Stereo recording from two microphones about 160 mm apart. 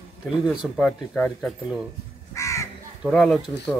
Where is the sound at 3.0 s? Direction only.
Centre (ahead or behind).